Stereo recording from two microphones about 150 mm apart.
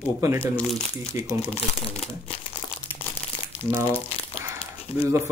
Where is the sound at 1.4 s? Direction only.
45° left (ahead or behind).